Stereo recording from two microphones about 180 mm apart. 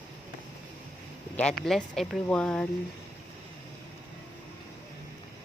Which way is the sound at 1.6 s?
Centre (ahead or behind).